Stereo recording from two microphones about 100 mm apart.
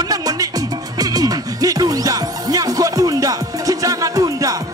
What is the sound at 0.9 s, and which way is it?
Music, 40° right (ahead or behind).